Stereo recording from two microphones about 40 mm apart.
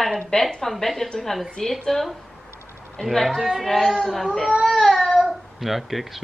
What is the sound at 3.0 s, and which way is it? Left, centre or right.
Speech, centre.